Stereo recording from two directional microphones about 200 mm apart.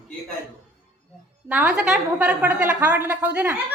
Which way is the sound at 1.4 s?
5° right (ahead or behind).